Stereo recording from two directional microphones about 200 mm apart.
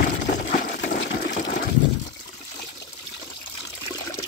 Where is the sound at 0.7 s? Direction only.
60° left (ahead or behind).